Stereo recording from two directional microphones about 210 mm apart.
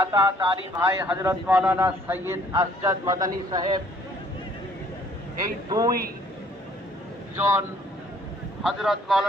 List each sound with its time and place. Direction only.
0.0 s speech: 15° right (ahead or behind)
5.6 s speech: 15° right (ahead or behind)
7.3 s speech: 10° right (ahead or behind)
8.6 s speech: centre (ahead or behind)